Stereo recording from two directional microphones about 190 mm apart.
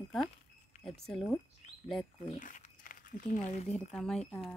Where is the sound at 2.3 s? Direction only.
45° left (ahead or behind).